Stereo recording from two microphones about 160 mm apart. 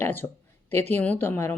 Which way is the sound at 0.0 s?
15° left (ahead or behind).